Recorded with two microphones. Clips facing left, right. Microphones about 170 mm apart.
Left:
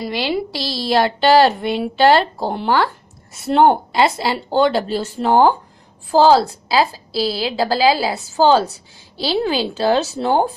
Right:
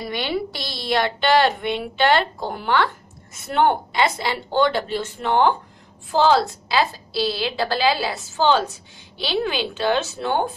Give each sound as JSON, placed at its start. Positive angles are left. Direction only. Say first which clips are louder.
{"t": 0.0, "sound": "a woman's voice", "louder": "left 4 dB", "side_deg": 30}